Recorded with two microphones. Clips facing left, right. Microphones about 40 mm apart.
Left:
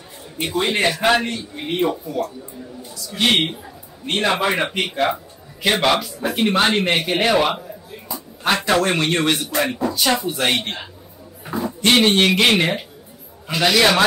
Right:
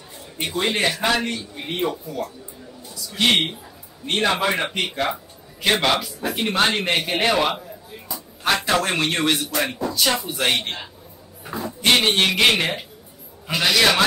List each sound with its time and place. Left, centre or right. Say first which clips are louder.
0.4 s a man's voice: left 2 dB; centre
1.0 s a man's voice: left 4 dB; centre
3.0 s a man's voice: left 1 dB; centre